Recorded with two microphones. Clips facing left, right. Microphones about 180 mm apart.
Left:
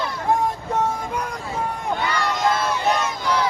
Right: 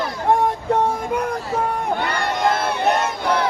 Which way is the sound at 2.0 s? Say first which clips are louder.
Right 1 dB; 55° right (ahead or behind).